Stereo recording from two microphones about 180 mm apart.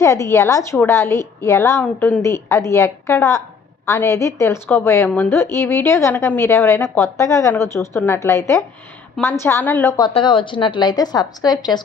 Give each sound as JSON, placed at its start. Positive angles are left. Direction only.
{"t": 0.0, "sound": "a woman's voice", "side_deg": 15}
{"t": 10.0, "sound": "a woman's voice", "side_deg": 25}